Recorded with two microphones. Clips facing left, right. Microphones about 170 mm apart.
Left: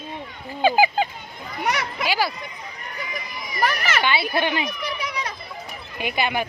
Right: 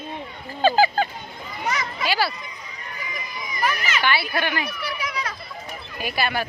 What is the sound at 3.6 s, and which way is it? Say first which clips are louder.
Speech: left 2 dB; 65° left (ahead or behind).